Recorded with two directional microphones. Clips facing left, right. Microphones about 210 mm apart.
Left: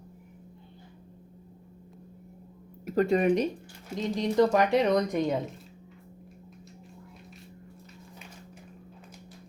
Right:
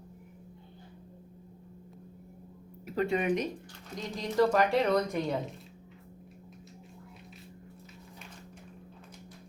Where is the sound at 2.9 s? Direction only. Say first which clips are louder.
Left 6 dB; 40° left (ahead or behind).